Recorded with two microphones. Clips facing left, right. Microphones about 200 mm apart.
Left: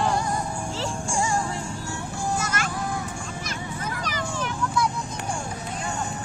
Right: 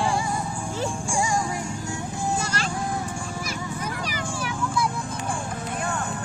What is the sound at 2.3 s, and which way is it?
Music, 30° right (ahead or behind).